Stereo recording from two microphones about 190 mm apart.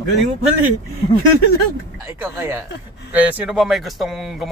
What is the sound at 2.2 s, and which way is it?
Speech, 15° right (ahead or behind).